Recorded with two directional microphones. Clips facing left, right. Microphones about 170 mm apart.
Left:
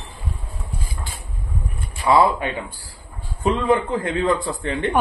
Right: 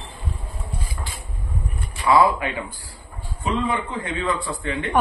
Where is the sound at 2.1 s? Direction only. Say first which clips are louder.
Left 1 dB; 25° left (ahead or behind).